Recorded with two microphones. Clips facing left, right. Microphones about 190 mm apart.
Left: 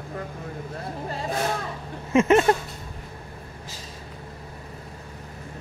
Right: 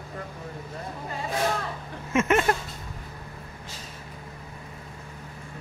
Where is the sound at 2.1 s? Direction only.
30° left (ahead or behind).